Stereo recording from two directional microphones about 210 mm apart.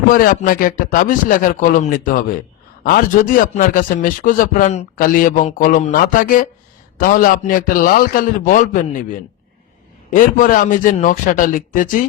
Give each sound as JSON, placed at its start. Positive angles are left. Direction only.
{"t": 0.1, "sound": "a man's voice", "side_deg": 40}
{"t": 10.2, "sound": "a man's voice", "side_deg": 40}